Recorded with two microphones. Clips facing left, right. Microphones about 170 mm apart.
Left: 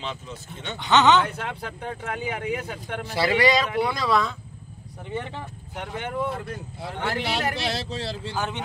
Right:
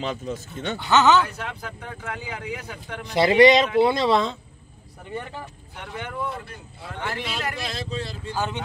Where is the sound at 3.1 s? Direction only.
20° right (ahead or behind).